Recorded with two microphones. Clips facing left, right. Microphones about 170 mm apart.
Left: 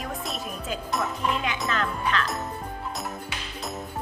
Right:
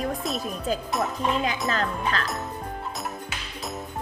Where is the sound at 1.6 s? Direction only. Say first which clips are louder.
Right 1 dB; 35° right (ahead or behind).